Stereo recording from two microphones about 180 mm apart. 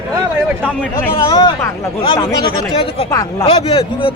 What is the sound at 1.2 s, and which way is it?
Speech, 20° left (ahead or behind).